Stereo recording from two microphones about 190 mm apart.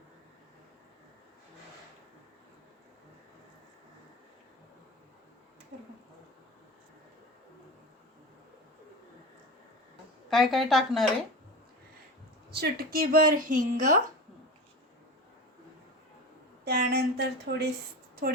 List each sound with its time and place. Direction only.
10.2 s speech: centre (ahead or behind)
12.5 s a woman's voice: 60° right (ahead or behind); by 13.9 s 40° right (ahead or behind)
16.6 s a sound: 55° right (ahead or behind)
18.2 s a woman's voice: 45° right (ahead or behind)